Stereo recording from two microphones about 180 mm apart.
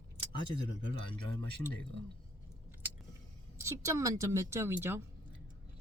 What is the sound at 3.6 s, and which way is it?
Speech, 15° right (ahead or behind).